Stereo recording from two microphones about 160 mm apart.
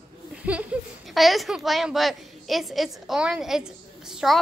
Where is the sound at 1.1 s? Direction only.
Centre (ahead or behind).